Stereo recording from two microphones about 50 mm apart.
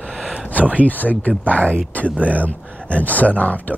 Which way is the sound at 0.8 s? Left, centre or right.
Left.